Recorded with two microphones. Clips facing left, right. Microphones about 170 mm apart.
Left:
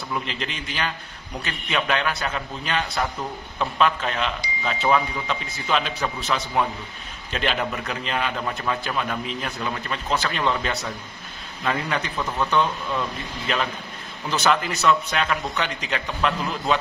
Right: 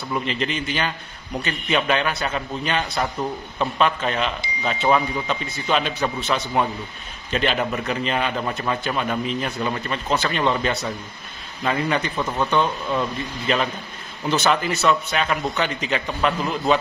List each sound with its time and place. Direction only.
0.1 s a man's voice: centre (ahead or behind)
12.2 s speech: 20° right (ahead or behind)
13.5 s a man's voice: centre (ahead or behind)